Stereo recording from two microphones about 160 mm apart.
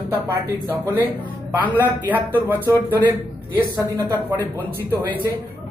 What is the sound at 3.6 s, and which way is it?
Speech, 15° right (ahead or behind).